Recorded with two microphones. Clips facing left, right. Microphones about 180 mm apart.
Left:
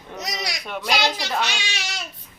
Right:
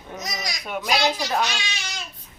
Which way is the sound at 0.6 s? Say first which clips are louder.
Right 2 dB; 5° right (ahead or behind).